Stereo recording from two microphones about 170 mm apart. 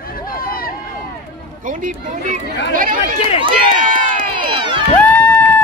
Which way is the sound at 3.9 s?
50° right (ahead or behind).